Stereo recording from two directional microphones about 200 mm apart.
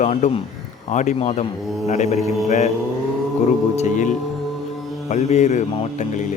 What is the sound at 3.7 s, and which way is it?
Speech, 35° left (ahead or behind).